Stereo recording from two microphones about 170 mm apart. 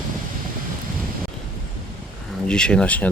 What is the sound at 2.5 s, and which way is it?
Speech, 5° left (ahead or behind).